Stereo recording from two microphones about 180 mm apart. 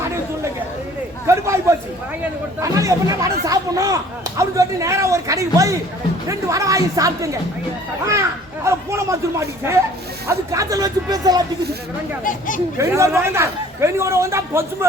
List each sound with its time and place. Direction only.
1.3 s a sound: 15° right (ahead or behind)
2.6 s speech: 20° right (ahead or behind)
8.6 s speech: 15° right (ahead or behind)
12.2 s speech: 45° left (ahead or behind)
12.8 s speech: 15° right (ahead or behind)